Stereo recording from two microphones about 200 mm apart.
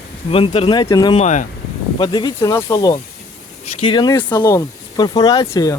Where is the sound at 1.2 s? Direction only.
35° left (ahead or behind).